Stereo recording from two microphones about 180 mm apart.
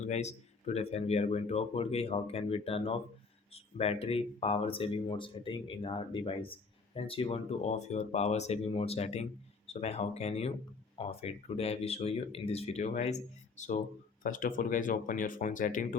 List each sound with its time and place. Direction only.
0.0 s speech: 40° left (ahead or behind)